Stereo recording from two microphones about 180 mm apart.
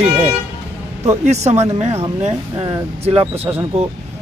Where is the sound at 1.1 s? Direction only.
40° right (ahead or behind).